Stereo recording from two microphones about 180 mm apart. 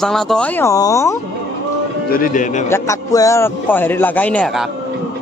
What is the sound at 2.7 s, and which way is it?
Speech, 15° left (ahead or behind).